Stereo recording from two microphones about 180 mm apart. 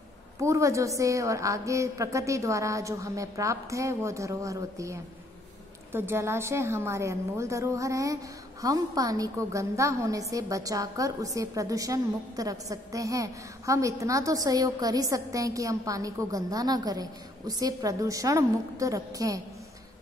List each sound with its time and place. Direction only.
0.4 s a woman's voice: 15° right (ahead or behind)